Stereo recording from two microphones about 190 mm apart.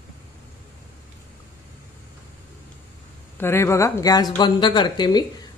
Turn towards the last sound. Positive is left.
turn(degrees=20)  # may be behind; listen again after turning